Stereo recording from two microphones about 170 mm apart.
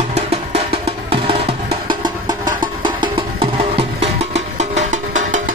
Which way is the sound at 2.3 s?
20° right (ahead or behind).